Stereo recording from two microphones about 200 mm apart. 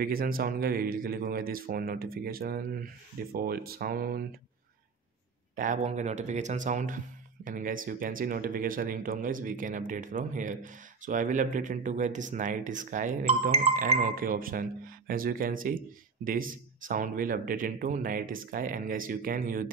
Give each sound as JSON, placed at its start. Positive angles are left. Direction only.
{"t": 0.0, "sound": "speech", "side_deg": -45}
{"t": 5.6, "sound": "speech", "side_deg": -35}